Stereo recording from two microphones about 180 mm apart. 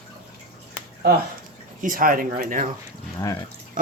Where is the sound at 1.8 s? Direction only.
50° right (ahead or behind).